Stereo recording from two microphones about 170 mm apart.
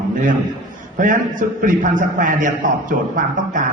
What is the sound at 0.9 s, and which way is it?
A man's voice, 50° right (ahead or behind).